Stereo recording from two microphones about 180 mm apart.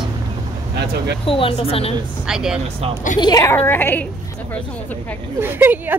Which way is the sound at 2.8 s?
35° right (ahead or behind).